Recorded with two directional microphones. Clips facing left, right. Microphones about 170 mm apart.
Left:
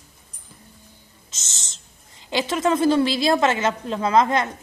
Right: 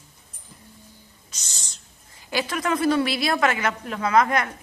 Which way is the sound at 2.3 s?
25° left (ahead or behind).